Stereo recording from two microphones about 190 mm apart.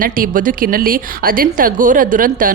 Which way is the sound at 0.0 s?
50° right (ahead or behind).